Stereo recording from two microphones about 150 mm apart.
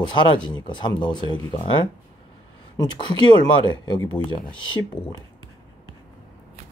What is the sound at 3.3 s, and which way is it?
Speech, 30° left (ahead or behind).